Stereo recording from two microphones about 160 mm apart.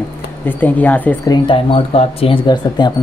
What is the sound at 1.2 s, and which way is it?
Speech, 30° left (ahead or behind).